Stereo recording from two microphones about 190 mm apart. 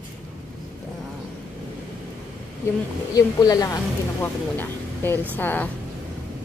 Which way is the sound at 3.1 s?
20° left (ahead or behind).